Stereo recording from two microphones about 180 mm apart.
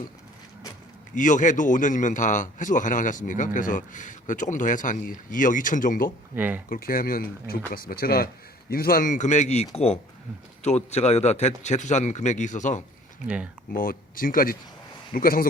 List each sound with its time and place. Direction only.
1.1 s a man's voice: 45° left (ahead or behind)
6.3 s speech: 10° right (ahead or behind)
6.7 s a man's voice: 55° left (ahead or behind)
13.2 s speech: 5° right (ahead or behind)
13.7 s a man's voice: 50° left (ahead or behind)